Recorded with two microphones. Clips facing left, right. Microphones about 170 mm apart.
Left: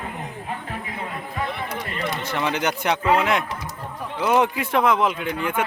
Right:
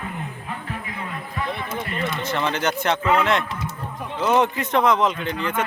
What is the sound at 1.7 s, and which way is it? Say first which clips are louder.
Run: right 1 dB; 25° right (ahead or behind).